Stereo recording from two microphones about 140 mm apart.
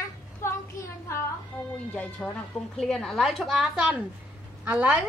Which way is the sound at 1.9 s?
10° left (ahead or behind).